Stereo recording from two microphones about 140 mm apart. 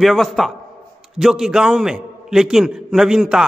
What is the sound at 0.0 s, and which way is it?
A man's voice, centre (ahead or behind).